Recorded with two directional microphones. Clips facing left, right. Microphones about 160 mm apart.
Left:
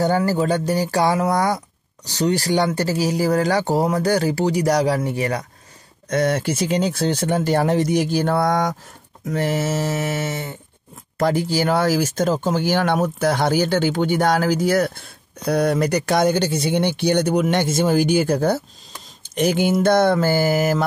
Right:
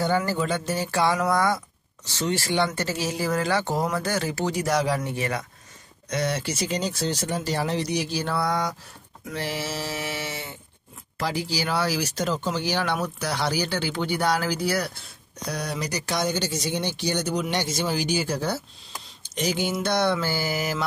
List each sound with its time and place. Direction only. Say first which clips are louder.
0.0 s speech: left 5 dB; 40° left (ahead or behind)
6.0 s speech: left 7 dB; 50° left (ahead or behind)